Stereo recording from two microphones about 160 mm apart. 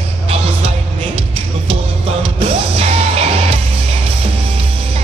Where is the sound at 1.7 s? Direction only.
35° right (ahead or behind).